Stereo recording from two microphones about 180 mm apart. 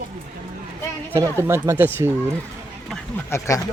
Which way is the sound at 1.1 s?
15° right (ahead or behind).